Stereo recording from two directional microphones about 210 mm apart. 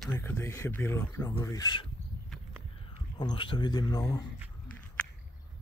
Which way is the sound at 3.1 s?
25° left (ahead or behind).